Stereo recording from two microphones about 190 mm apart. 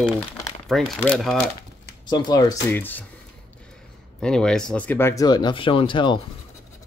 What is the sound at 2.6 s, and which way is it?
Speech, 10° left (ahead or behind).